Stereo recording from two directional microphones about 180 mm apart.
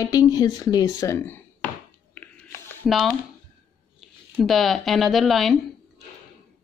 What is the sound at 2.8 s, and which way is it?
Speech, centre (ahead or behind).